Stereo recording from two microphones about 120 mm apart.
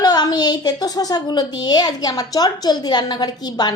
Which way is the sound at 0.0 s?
35° left (ahead or behind).